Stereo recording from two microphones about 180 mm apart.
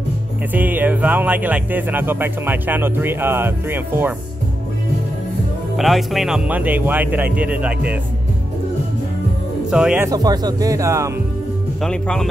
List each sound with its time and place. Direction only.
0.5 s speech: 10° right (ahead or behind)
5.8 s speech: centre (ahead or behind)
9.7 s speech: 5° right (ahead or behind)
10.0 s speech: 20° right (ahead or behind)
11.8 s speech: 5° left (ahead or behind)